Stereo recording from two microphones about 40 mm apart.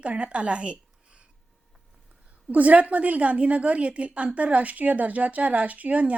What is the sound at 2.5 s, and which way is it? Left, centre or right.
A woman's voice, right.